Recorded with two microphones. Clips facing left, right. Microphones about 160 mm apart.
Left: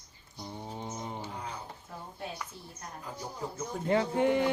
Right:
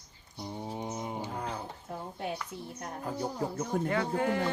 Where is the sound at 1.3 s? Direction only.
55° right (ahead or behind).